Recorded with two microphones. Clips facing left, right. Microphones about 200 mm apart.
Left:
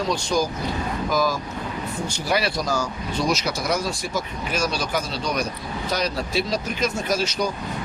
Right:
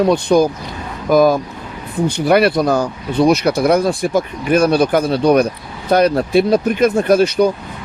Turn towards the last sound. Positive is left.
turn(degrees=-60)  # may be behind; listen again after turning